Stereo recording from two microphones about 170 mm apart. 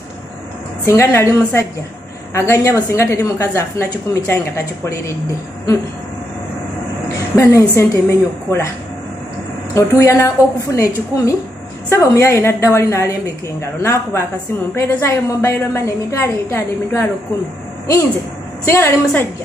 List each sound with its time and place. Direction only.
0.8 s a woman's voice: 15° left (ahead or behind)
7.3 s a woman's voice: 15° left (ahead or behind)
9.8 s a woman's voice: 15° left (ahead or behind)
18.7 s a woman's voice: 15° left (ahead or behind)